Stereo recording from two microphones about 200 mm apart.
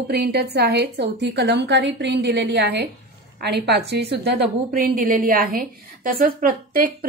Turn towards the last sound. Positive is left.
turn(degrees=-45)  # may be behind; listen again after turning